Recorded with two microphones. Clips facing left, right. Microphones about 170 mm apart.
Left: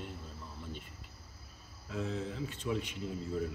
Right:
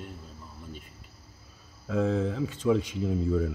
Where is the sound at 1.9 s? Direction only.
90° right.